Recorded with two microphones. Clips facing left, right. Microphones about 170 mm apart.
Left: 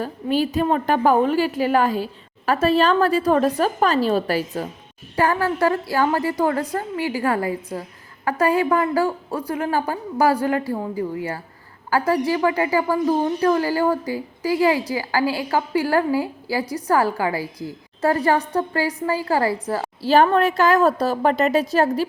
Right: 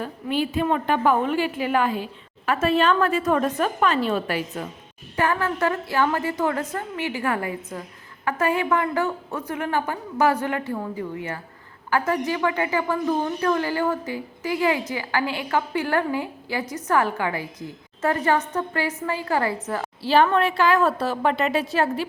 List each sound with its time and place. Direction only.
0.0 s a woman's voice: 40° left (ahead or behind)
11.9 s a woman's voice: 35° left (ahead or behind)